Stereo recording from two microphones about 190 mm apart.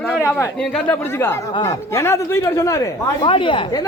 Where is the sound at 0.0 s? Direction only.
5° left (ahead or behind).